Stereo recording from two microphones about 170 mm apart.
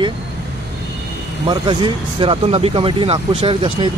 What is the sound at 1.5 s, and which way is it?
Speech, 30° right (ahead or behind).